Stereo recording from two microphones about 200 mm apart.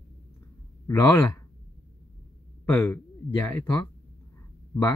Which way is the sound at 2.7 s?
10° left (ahead or behind).